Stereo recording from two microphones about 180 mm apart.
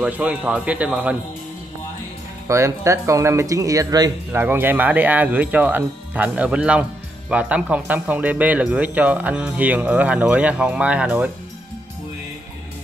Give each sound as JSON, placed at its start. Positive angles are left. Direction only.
{"t": 0.0, "sound": "speech", "side_deg": -5}
{"t": 2.4, "sound": "speech", "side_deg": -15}